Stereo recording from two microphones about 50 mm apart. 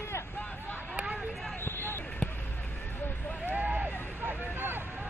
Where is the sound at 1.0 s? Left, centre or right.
Right.